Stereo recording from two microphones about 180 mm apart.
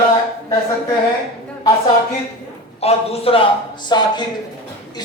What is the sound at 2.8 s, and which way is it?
A man's voice, 35° left (ahead or behind).